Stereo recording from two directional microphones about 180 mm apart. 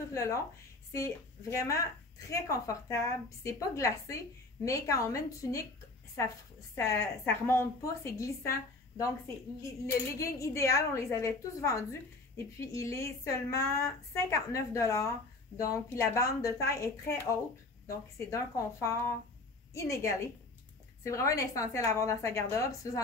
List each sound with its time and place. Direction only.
0.1 s a woman's voice: 15° left (ahead or behind)
6.7 s a woman's voice: 15° left (ahead or behind)